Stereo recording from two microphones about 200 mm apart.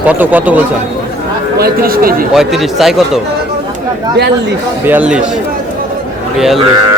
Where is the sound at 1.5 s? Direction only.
50° right (ahead or behind).